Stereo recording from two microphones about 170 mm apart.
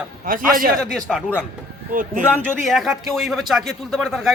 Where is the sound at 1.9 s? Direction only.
50° right (ahead or behind).